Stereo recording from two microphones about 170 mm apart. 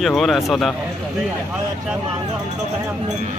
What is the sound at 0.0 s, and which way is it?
Speech, centre (ahead or behind).